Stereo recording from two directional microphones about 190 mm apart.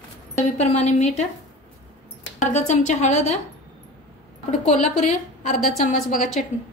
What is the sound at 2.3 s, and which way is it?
A woman's voice, 40° left (ahead or behind).